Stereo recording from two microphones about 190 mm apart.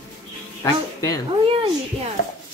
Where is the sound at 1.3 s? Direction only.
30° right (ahead or behind).